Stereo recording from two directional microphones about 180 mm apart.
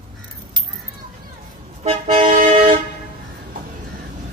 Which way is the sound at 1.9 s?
45° right (ahead or behind).